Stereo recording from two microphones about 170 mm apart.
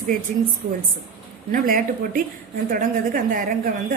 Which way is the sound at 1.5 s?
55° right (ahead or behind).